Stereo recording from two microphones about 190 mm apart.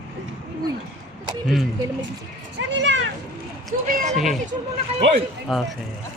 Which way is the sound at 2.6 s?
70° right (ahead or behind).